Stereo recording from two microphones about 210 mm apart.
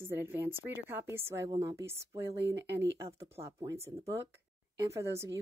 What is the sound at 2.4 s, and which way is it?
Speech, 55° right (ahead or behind).